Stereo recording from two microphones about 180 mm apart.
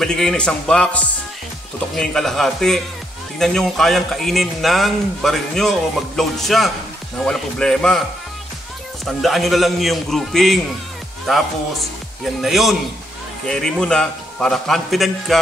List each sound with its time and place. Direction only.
0.0 s speech: 5° left (ahead or behind)
9.0 s speech: centre (ahead or behind)